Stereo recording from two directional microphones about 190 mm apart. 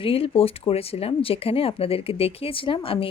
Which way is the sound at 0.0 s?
30° left (ahead or behind).